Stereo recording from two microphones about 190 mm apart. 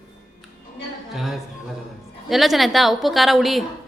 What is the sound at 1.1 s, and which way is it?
A woman's voice, centre (ahead or behind).